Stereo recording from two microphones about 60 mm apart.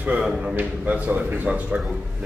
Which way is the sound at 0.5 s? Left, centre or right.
Right.